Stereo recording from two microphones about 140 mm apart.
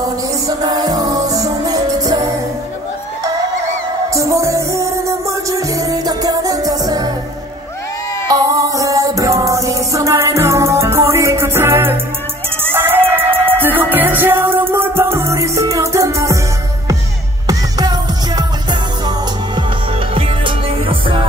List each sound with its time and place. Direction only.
0.5 s music: 30° right (ahead or behind)
4.1 s music: 20° right (ahead or behind)
8.3 s music: 25° right (ahead or behind)
17.5 s music: 30° right (ahead or behind)
20.2 s music: 40° right (ahead or behind)